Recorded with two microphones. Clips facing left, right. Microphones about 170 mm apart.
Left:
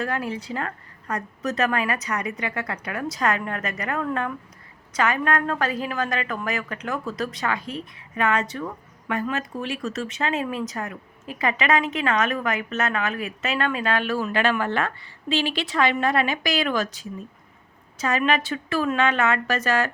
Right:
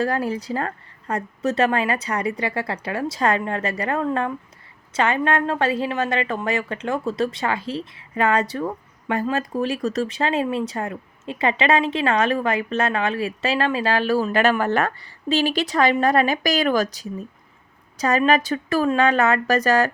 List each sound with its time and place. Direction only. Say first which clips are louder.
0.0 s a woman's voice: right 5 dB; 35° right (ahead or behind)